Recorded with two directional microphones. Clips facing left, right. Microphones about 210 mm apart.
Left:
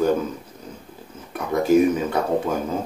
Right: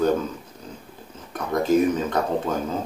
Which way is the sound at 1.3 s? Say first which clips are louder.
Left 3 dB; 10° left (ahead or behind).